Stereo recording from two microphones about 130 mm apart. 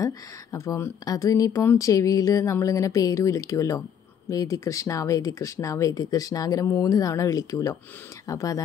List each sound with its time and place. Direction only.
0.0 s speech: 25° left (ahead or behind)